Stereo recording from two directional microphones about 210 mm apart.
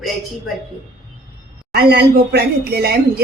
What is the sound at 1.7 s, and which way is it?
A woman's voice, 45° right (ahead or behind).